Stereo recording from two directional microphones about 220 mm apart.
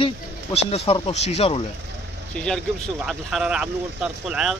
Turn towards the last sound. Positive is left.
turn(degrees=-5)  # may be behind; listen again after turning